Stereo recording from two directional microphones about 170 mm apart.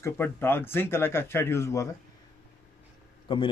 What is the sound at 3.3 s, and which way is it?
Speech, 30° left (ahead or behind).